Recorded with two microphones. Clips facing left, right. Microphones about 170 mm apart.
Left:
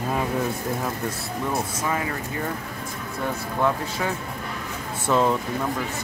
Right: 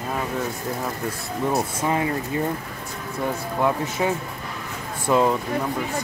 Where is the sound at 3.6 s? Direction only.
20° right (ahead or behind).